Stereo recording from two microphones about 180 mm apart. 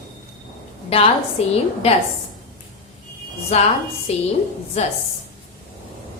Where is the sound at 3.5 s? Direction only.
35° left (ahead or behind).